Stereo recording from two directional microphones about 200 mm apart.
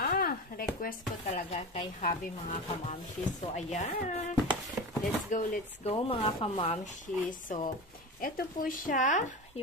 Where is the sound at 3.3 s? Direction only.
35° left (ahead or behind).